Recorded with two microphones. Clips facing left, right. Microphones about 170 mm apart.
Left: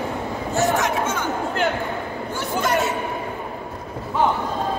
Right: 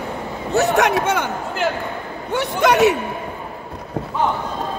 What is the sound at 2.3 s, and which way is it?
Speech, 75° right (ahead or behind).